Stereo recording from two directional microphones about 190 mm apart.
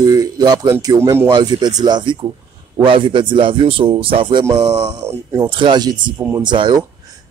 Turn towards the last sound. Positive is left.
turn(degrees=-25)  # may be behind; listen again after turning